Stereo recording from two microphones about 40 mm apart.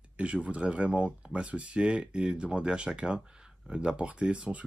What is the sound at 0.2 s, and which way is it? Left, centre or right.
Speech, right.